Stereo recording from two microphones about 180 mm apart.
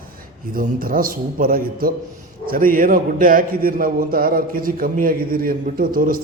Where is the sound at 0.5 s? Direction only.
50° right (ahead or behind).